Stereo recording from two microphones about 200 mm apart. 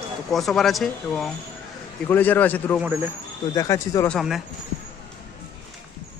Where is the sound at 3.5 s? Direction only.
15° left (ahead or behind).